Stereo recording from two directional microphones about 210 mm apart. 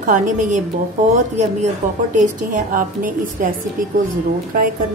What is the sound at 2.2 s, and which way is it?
Speech, 40° right (ahead or behind).